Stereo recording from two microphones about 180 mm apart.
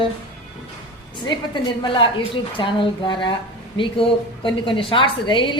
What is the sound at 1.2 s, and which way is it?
A woman's voice, 25° left (ahead or behind).